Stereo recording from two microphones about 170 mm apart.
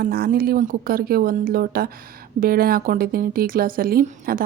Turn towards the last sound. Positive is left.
turn(degrees=-55)  # may be behind; listen again after turning